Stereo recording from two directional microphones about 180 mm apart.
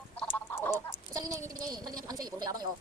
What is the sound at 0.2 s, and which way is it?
Duck, 10° left (ahead or behind).